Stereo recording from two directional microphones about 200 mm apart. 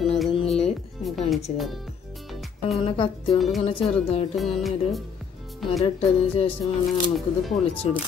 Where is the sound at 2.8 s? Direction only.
25° left (ahead or behind).